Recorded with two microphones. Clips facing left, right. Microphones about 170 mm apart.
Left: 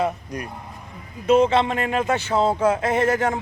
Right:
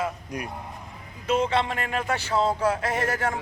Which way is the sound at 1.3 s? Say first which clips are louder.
Left 7 dB; 25° left (ahead or behind).